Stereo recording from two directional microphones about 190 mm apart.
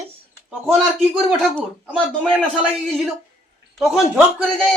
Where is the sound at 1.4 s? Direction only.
5° left (ahead or behind).